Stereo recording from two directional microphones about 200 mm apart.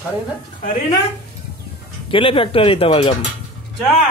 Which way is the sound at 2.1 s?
25° left (ahead or behind).